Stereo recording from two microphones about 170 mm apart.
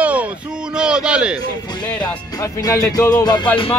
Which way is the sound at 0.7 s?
5° right (ahead or behind).